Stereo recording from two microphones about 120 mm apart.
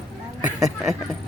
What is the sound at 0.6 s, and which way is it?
Speech, 5° right (ahead or behind).